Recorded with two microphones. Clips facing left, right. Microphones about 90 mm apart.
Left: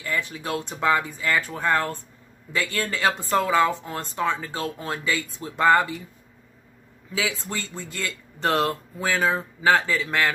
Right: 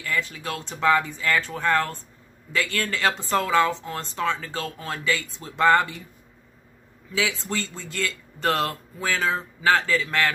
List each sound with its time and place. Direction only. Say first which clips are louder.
0.0 s speech: even; 20° left (ahead or behind)
7.4 s speech: right 2 dB; 15° left (ahead or behind)